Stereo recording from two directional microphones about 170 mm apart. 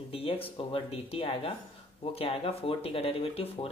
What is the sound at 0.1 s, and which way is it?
Speech, 35° left (ahead or behind).